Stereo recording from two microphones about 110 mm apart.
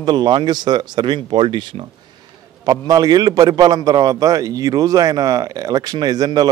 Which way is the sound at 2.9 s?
35° right (ahead or behind).